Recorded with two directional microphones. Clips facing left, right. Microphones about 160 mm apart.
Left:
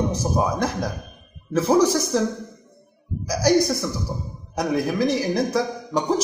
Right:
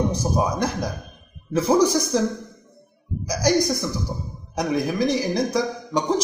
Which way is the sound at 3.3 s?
5° left (ahead or behind).